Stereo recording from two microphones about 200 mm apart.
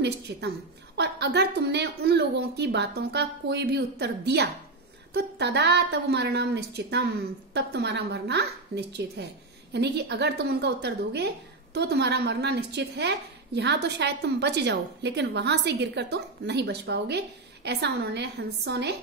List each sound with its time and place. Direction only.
0.3 s a woman's voice: 60° right (ahead or behind)